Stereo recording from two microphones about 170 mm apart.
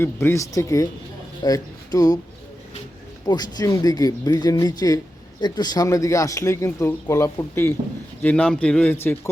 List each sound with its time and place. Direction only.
0.0 s speech: 15° left (ahead or behind)
3.2 s speech: 20° left (ahead or behind)